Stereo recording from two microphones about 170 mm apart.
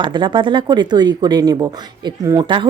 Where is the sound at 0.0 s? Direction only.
25° right (ahead or behind).